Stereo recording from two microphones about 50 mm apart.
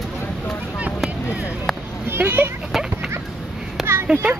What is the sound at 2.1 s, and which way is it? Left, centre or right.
Speech, right.